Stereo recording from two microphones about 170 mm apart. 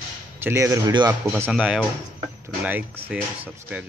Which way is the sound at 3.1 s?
5° right (ahead or behind).